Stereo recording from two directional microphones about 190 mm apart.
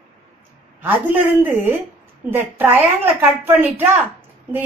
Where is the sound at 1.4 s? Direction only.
10° right (ahead or behind).